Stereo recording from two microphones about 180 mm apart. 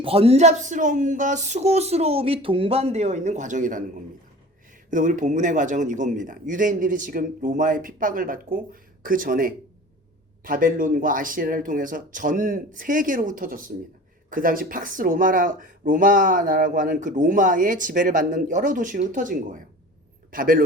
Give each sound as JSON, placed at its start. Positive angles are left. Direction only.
{"t": 0.0, "sound": "speech", "side_deg": -35}
{"t": 4.9, "sound": "speech", "side_deg": -45}